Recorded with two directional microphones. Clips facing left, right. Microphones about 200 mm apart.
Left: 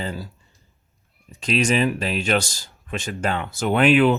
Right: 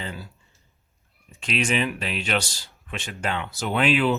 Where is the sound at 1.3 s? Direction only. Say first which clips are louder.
Left 5 dB; 40° left (ahead or behind).